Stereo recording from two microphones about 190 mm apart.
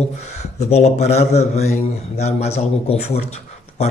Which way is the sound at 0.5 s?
35° left (ahead or behind).